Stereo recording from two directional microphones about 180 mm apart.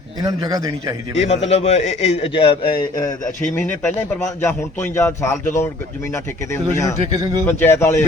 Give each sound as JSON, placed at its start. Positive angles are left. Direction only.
{"t": 0.2, "sound": "a man's voice", "side_deg": -20}
{"t": 1.1, "sound": "a man's voice", "side_deg": 35}
{"t": 4.2, "sound": "a man's voice", "side_deg": 15}
{"t": 7.0, "sound": "a man's voice", "side_deg": -25}
{"t": 7.4, "sound": "a man's voice", "side_deg": 15}